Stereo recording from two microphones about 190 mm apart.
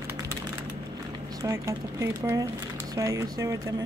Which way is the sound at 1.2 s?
15° right (ahead or behind).